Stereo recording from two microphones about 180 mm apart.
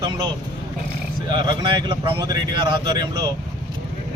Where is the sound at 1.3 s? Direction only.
25° right (ahead or behind).